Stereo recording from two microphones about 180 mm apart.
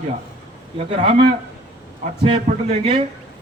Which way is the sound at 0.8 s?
30° right (ahead or behind).